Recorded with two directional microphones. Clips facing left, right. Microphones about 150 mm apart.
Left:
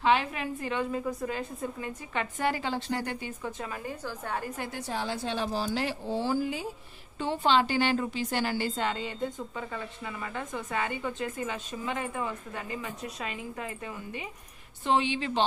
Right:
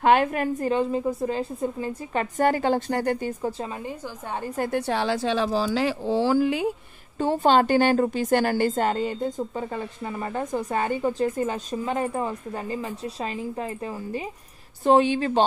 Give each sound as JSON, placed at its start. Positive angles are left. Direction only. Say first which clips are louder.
{"t": 0.0, "sound": "a woman's voice", "louder": "right 7 dB", "side_deg": -50}
{"t": 4.6, "sound": "a woman's voice", "louder": "right 9 dB", "side_deg": -60}
{"t": 7.2, "sound": "a woman's voice", "louder": "right 6 dB", "side_deg": -45}